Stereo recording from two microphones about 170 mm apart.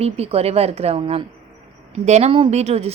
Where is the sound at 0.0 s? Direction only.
35° right (ahead or behind).